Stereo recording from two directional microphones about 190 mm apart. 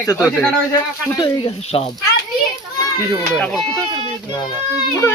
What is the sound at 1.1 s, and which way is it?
Speech, 25° left (ahead or behind).